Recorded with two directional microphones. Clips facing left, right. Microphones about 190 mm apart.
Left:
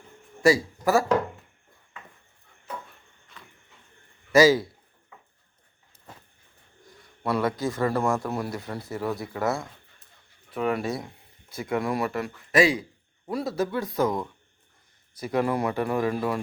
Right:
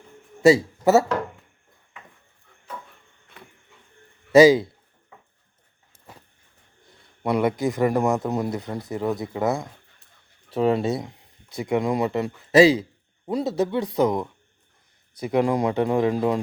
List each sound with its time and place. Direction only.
0.4 s speech: 25° right (ahead or behind)
4.3 s speech: 20° right (ahead or behind)
7.2 s a man's voice: 20° right (ahead or behind)
10.5 s a man's voice: 30° right (ahead or behind)